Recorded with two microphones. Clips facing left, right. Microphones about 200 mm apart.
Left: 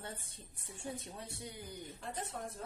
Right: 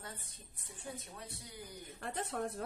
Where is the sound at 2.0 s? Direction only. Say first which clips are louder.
Right 5 dB; 70° right (ahead or behind).